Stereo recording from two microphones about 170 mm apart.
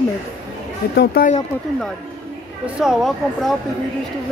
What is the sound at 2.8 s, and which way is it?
Speech, 5° right (ahead or behind).